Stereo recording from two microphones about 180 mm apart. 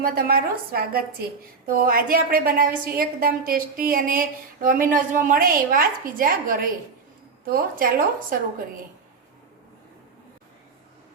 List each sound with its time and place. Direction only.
0.0 s a woman's voice: 55° right (ahead or behind)